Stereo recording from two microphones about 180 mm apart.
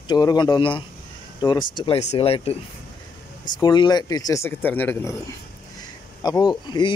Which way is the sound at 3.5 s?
25° left (ahead or behind).